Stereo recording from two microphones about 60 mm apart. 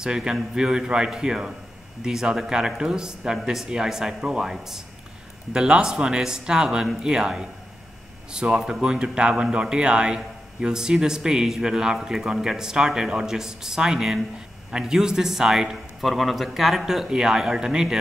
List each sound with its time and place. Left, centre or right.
0.0 s speech: centre